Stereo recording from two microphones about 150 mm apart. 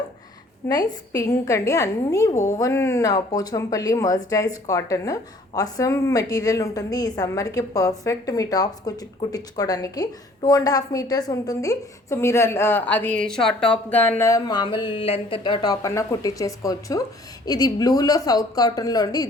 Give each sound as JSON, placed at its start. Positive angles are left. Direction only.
{"t": 0.7, "sound": "a woman's voice", "side_deg": 25}